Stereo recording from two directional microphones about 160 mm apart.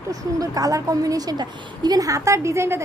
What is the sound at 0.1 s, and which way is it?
A woman's voice, 20° right (ahead or behind).